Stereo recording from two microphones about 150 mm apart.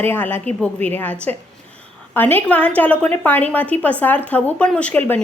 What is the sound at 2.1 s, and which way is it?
A woman's voice, 10° left (ahead or behind).